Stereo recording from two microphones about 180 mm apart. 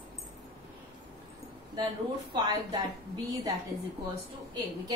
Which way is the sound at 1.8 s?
25° right (ahead or behind).